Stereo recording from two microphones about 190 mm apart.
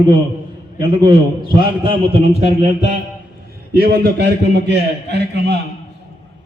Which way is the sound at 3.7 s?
55° right (ahead or behind).